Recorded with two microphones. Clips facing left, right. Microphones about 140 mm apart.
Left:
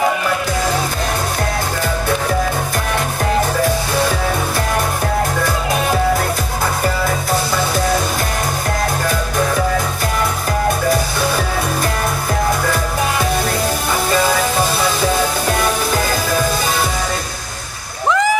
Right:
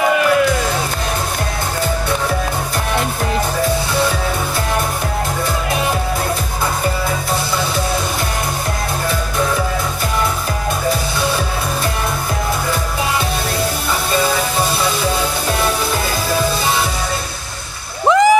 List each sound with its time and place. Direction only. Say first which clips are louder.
18.0 s music: right 4 dB; 20° right (ahead or behind)